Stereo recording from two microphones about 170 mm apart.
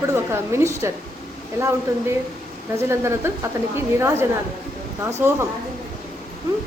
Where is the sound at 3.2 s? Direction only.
15° right (ahead or behind).